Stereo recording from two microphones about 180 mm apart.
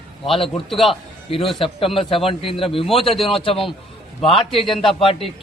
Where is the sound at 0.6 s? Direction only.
Centre (ahead or behind).